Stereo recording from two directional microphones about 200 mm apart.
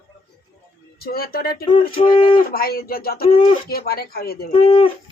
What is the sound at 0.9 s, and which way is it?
Speech, 50° left (ahead or behind).